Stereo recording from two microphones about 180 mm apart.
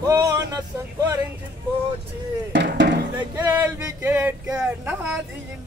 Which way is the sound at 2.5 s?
75° right (ahead or behind).